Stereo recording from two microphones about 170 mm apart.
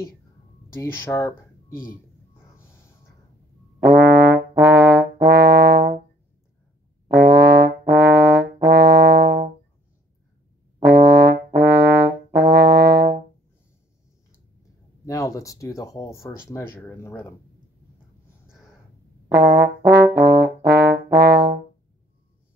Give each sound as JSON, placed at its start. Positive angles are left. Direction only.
{"t": 0.7, "sound": "speech", "side_deg": 15}
{"t": 3.8, "sound": "trombone", "side_deg": -90}
{"t": 7.1, "sound": "brass instrument", "side_deg": -85}
{"t": 10.8, "sound": "brass instrument", "side_deg": -85}
{"t": 15.0, "sound": "speech", "side_deg": 20}
{"t": 19.3, "sound": "brass instrument", "side_deg": -90}